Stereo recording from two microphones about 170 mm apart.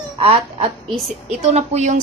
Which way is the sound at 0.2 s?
35° right (ahead or behind).